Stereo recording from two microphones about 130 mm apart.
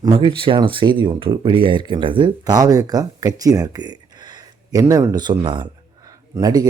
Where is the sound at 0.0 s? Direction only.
40° right (ahead or behind).